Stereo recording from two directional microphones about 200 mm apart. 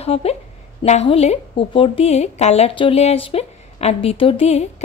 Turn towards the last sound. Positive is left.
turn(degrees=30)  # may be behind; listen again after turning